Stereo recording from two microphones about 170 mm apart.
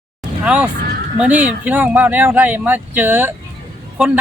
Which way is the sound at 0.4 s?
5° right (ahead or behind).